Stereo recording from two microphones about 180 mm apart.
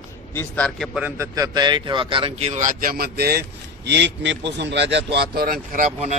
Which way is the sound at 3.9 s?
70° right (ahead or behind).